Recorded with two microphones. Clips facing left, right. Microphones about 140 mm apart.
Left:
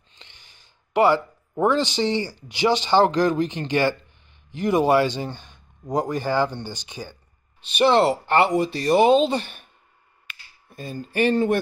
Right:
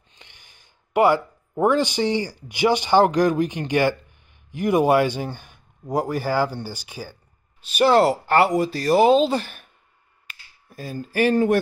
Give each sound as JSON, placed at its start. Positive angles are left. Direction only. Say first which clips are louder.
{"t": 0.1, "sound": "a man's voice", "louder": "even", "side_deg": -15}
{"t": 10.3, "sound": "finger snapping", "louder": "left 1 dB", "side_deg": -35}
{"t": 10.7, "sound": "a man's voice", "louder": "right 1 dB", "side_deg": -5}